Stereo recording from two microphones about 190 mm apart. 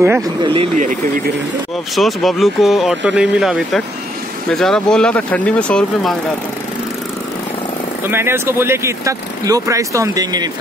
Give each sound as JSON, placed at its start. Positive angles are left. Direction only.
{"t": 0.4, "sound": "speech", "side_deg": -25}
{"t": 0.7, "sound": "speech", "side_deg": -40}
{"t": 2.0, "sound": "speech", "side_deg": 0}
{"t": 8.1, "sound": "speech", "side_deg": -15}